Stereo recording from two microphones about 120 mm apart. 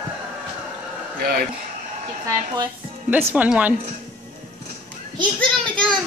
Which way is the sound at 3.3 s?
10° right (ahead or behind).